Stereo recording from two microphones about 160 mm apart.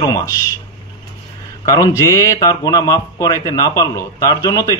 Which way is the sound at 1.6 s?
20° left (ahead or behind).